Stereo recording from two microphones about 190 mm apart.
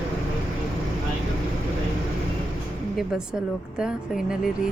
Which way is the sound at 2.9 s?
5° right (ahead or behind).